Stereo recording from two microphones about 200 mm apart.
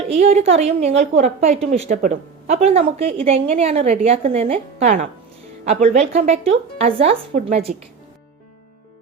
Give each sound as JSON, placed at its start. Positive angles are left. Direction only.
{"t": 0.1, "sound": "a woman's voice", "side_deg": -30}